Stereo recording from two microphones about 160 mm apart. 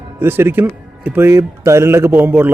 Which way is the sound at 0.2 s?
15° right (ahead or behind).